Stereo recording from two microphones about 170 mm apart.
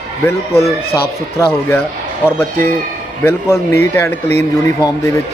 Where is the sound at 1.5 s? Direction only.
15° left (ahead or behind).